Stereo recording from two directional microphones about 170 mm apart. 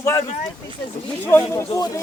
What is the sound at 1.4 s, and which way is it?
Speech, 20° left (ahead or behind).